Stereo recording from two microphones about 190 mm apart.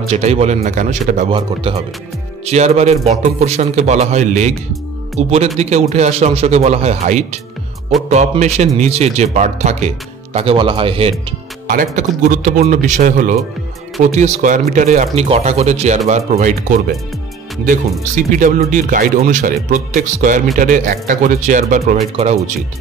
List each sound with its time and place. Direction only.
0.0 s speech: 35° right (ahead or behind)
11.6 s speech: 45° right (ahead or behind)
18.1 s speech: 45° right (ahead or behind)